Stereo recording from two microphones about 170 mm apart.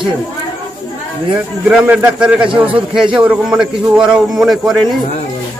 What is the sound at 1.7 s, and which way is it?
Speech, 5° right (ahead or behind).